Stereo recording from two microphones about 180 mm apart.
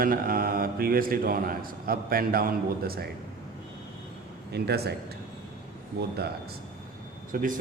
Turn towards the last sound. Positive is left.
turn(degrees=-50)  # may be behind; listen again after turning